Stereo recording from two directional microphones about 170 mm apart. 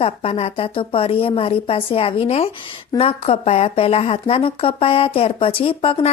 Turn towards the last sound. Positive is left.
turn(degrees=35)  # may be behind; listen again after turning